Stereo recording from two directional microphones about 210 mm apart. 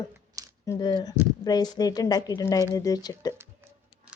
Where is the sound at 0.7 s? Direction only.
20° left (ahead or behind).